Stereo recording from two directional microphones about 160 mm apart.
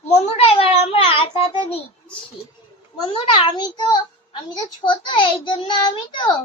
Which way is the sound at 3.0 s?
30° left (ahead or behind).